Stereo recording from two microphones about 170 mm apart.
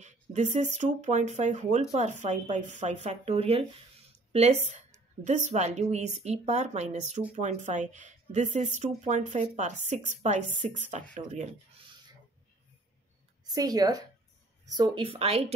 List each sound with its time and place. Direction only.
0.0 s speech: 45° right (ahead or behind)
13.5 s a woman's voice: 20° right (ahead or behind)